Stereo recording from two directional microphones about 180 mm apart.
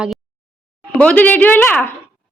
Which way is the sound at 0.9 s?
10° left (ahead or behind).